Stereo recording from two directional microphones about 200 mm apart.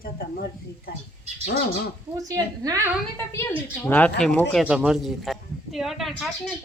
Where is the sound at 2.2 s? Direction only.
15° right (ahead or behind).